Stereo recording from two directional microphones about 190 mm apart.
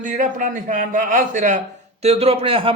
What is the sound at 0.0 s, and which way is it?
A man's voice, 45° right (ahead or behind).